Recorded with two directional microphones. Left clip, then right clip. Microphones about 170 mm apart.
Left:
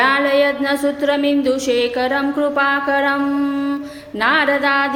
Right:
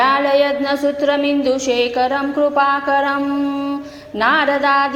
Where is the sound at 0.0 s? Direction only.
10° left (ahead or behind).